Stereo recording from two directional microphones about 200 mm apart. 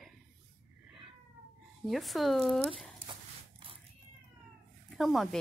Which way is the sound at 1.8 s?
Centre (ahead or behind).